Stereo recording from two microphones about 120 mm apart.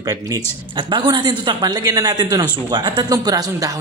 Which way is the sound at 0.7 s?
45° right (ahead or behind).